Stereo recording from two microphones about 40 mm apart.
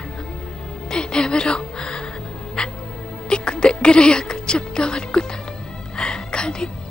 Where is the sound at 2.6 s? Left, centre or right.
Left.